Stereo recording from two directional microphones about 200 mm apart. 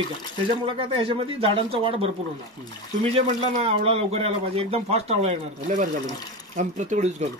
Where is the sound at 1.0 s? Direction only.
25° right (ahead or behind).